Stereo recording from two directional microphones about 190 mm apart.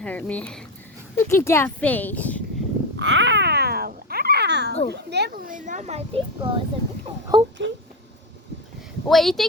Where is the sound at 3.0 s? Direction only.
70° right (ahead or behind).